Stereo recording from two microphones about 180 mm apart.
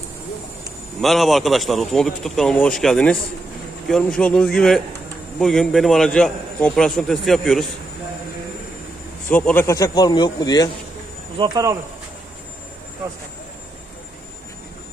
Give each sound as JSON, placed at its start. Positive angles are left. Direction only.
{"t": 1.0, "sound": "a man's voice", "side_deg": 0}
{"t": 9.3, "sound": "speech", "side_deg": 10}
{"t": 11.3, "sound": "speech", "side_deg": -25}